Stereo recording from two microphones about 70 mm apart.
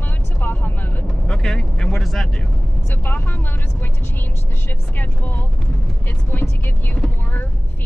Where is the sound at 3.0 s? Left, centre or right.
Left.